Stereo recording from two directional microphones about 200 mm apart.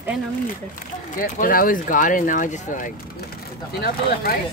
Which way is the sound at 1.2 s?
45° left (ahead or behind).